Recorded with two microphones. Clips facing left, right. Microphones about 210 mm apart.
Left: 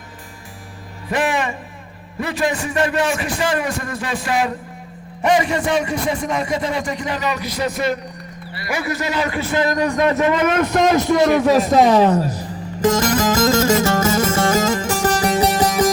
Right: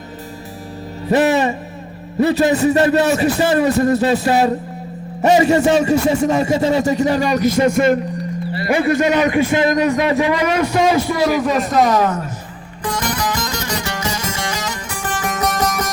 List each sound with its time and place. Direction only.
1.0 s music: 35° right (ahead or behind)
2.1 s speech: 25° right (ahead or behind)
2.6 s music: 35° right (ahead or behind)
5.3 s speech: 25° right (ahead or behind)
7.0 s speech: 40° right (ahead or behind)
8.5 s a man's voice: 30° right (ahead or behind); by 11.7 s 5° left (ahead or behind)
11.8 s speech: 30° left (ahead or behind)
12.8 s music: 45° left (ahead or behind)
14.7 s music: 90° left
15.0 s music: 40° left (ahead or behind)